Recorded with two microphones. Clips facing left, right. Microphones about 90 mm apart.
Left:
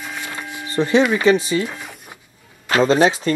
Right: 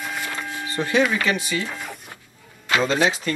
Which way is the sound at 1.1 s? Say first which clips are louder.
Left 7 dB; 25° left (ahead or behind).